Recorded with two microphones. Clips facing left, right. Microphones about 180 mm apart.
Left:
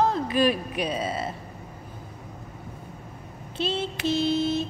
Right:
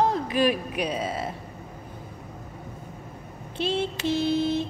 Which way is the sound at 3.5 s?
15° right (ahead or behind).